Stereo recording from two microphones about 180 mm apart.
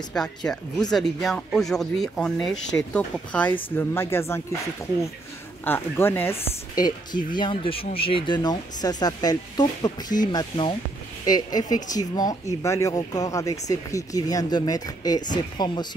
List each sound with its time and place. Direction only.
0.1 s speech: 5° left (ahead or behind)
5.7 s speech: 10° left (ahead or behind)